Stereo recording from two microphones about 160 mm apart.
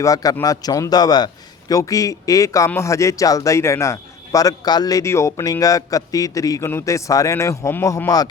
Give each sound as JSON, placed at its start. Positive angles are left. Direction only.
{"t": 0.0, "sound": "a man's voice", "side_deg": 20}